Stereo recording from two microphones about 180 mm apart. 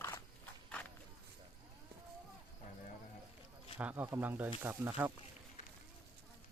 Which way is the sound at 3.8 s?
10° right (ahead or behind).